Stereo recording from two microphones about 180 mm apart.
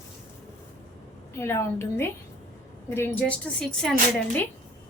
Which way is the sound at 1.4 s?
15° left (ahead or behind).